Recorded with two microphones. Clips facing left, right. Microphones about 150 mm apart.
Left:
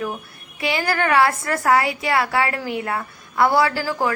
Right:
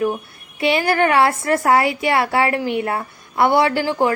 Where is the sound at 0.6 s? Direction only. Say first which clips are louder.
Right 5 dB; 25° right (ahead or behind).